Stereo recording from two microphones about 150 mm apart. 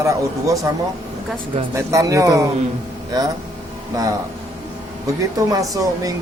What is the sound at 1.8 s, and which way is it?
Speech, 20° right (ahead or behind).